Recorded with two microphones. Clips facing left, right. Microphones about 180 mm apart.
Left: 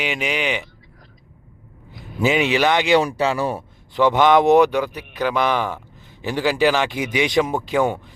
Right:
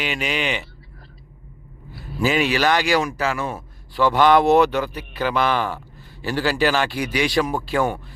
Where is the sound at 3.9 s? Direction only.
20° left (ahead or behind).